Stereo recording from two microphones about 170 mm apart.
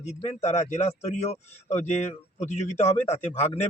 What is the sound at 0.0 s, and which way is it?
Speech, 40° left (ahead or behind).